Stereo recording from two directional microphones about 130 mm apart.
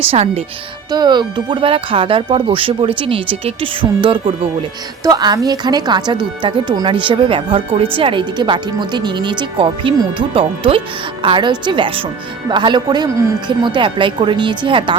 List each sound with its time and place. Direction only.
0.1 s speech: 50° right (ahead or behind)
0.9 s speech: 35° right (ahead or behind)
5.0 s speech: 30° right (ahead or behind)
13.5 s speech: 35° right (ahead or behind)